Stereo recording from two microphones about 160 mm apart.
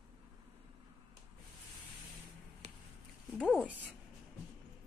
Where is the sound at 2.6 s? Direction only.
45° right (ahead or behind).